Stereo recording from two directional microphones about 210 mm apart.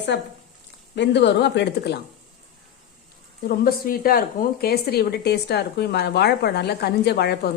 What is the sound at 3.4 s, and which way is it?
Speech, 45° left (ahead or behind).